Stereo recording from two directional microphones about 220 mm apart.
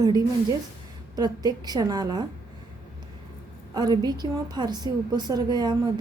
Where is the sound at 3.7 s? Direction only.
20° right (ahead or behind).